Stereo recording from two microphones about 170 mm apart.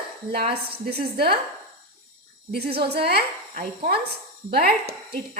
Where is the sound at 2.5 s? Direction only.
65° right (ahead or behind).